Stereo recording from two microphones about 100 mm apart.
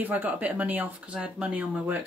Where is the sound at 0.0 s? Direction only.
15° right (ahead or behind).